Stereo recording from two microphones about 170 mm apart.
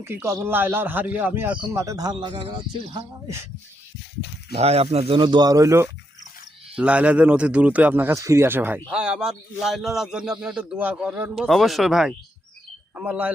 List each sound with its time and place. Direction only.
0.0 s a man's voice: 15° right (ahead or behind)
4.5 s a man's voice: 35° right (ahead or behind); by 13.3 s 10° right (ahead or behind)